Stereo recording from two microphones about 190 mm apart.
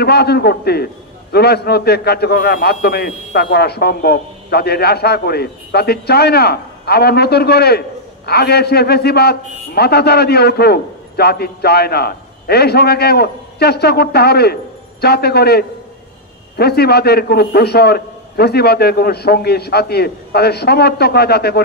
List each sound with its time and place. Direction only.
0.0 s a man's voice: 55° left (ahead or behind)